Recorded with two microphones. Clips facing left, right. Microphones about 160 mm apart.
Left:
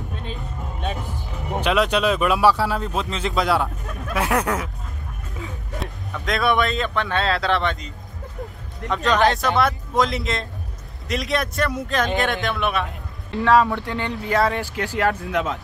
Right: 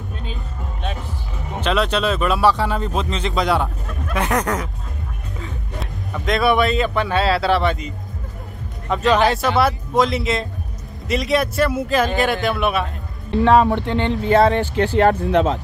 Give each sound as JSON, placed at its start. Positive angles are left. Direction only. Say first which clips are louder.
{"t": 1.5, "sound": "speech", "louder": "even", "side_deg": 10}
{"t": 6.2, "sound": "speech", "louder": "right 4 dB", "side_deg": 0}
{"t": 13.3, "sound": "speech", "louder": "right 3 dB", "side_deg": -20}